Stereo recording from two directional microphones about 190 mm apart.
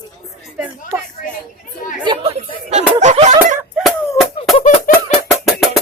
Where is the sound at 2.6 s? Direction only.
35° right (ahead or behind).